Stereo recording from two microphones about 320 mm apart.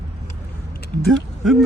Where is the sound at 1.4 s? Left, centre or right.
Centre.